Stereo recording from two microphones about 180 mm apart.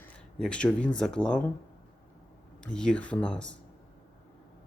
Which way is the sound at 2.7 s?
5° left (ahead or behind).